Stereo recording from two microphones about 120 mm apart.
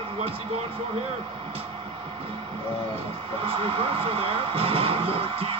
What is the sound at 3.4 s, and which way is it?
Music, 50° right (ahead or behind).